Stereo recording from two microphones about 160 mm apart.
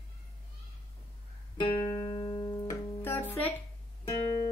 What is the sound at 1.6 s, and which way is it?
Music, 30° left (ahead or behind).